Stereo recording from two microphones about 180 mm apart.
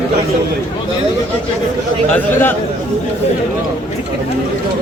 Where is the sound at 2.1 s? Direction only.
10° left (ahead or behind).